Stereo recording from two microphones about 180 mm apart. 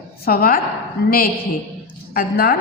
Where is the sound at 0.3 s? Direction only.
55° left (ahead or behind).